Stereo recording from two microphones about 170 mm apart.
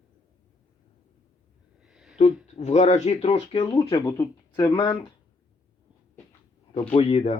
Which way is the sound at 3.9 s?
20° left (ahead or behind).